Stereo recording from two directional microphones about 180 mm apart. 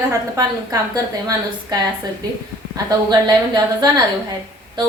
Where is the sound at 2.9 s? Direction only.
25° right (ahead or behind).